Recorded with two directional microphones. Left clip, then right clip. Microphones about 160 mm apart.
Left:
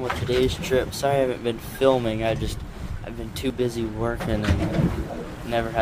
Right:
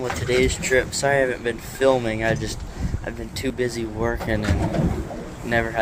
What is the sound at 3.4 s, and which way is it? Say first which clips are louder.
Speech: right 1 dB; 10° left (ahead or behind).